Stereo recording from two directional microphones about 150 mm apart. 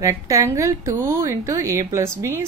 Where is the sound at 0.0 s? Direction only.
20° right (ahead or behind).